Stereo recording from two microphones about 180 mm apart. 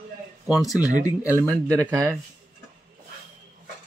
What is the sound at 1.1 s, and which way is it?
Speech, 15° left (ahead or behind).